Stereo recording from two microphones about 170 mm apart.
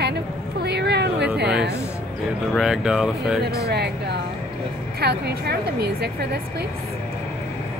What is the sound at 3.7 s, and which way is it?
A woman's voice, 75° right (ahead or behind).